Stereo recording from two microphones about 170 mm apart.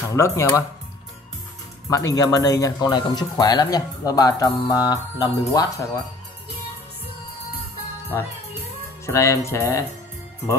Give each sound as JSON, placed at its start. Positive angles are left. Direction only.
{"t": 0.1, "sound": "speech", "side_deg": 15}
{"t": 1.9, "sound": "speech", "side_deg": 20}
{"t": 8.1, "sound": "speech", "side_deg": 15}